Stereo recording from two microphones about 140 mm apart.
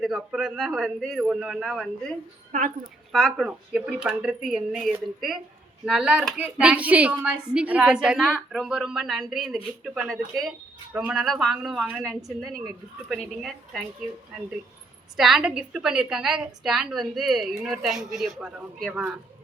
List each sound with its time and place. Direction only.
0.0 s a woman's voice: 5° right (ahead or behind)
2.5 s a woman's voice: 75° right (ahead or behind)
3.1 s a woman's voice: centre (ahead or behind)
15.1 s a woman's voice: 5° right (ahead or behind)